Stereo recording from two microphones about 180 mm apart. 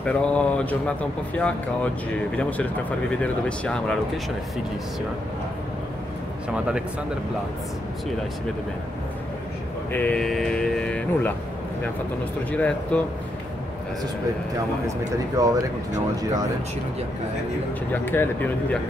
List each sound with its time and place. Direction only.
0.0 s speech: 5° left (ahead or behind)
3.1 s speech: 5° left (ahead or behind)
9.9 s speech: 5° left (ahead or behind)
12.4 s speech: 5° left (ahead or behind)
15.4 s speech: 20° right (ahead or behind)
17.9 s speech: 10° left (ahead or behind)